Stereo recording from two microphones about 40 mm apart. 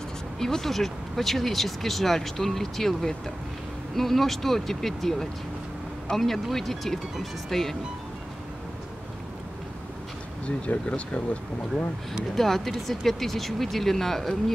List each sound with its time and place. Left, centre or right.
0.4 s speech: centre
10.4 s speech: left
11.7 s speech: centre